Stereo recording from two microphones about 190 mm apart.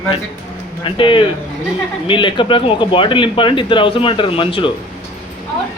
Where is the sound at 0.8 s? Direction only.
25° left (ahead or behind).